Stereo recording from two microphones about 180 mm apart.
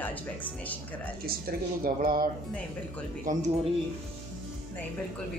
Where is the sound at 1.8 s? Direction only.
55° right (ahead or behind).